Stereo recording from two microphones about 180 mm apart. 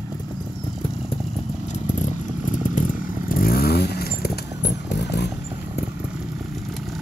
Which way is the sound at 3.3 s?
55° left (ahead or behind).